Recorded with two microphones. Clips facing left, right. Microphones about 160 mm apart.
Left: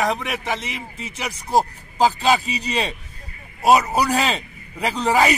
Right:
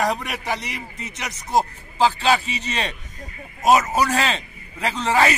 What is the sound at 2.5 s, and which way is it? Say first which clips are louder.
Speech: left 3 dB; 35° left (ahead or behind).